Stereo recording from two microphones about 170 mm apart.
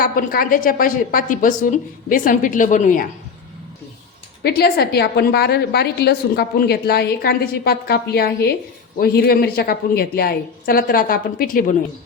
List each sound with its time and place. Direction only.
0.0 s a woman's voice: 55° left (ahead or behind)
4.4 s a woman's voice: 65° left (ahead or behind)